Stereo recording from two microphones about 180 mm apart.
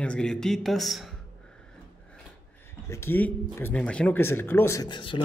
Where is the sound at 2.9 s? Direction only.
10° left (ahead or behind).